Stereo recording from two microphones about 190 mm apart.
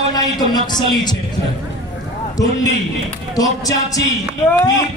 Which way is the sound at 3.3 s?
20° left (ahead or behind).